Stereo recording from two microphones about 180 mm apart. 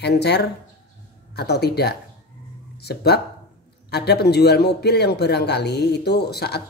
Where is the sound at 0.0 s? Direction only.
70° left (ahead or behind).